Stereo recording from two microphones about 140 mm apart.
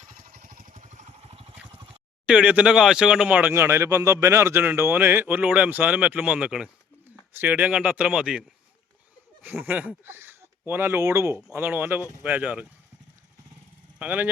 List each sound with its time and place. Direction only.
0.2 s vehicle: 85° right; by 1.3 s 60° right (ahead or behind)
2.2 s speech: 10° right (ahead or behind)
9.6 s speech: 10° right (ahead or behind)
14.0 s speech: 10° right (ahead or behind)